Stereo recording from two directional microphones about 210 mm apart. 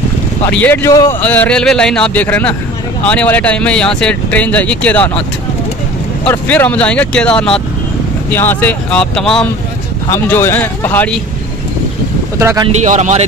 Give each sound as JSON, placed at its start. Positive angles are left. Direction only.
{"t": 0.5, "sound": "speech", "side_deg": 10}
{"t": 6.2, "sound": "speech", "side_deg": 5}
{"t": 12.4, "sound": "speech", "side_deg": -15}
{"t": 12.8, "sound": "a man's voice", "side_deg": -35}